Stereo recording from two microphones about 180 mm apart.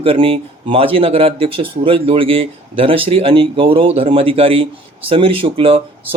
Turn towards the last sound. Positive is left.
turn(degrees=-30)  # may be behind; listen again after turning